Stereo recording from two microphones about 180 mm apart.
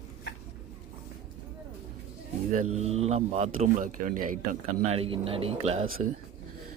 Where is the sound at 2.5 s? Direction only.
40° right (ahead or behind).